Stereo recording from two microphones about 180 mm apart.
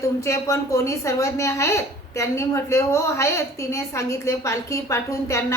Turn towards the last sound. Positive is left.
turn(degrees=15)  # may be behind; listen again after turning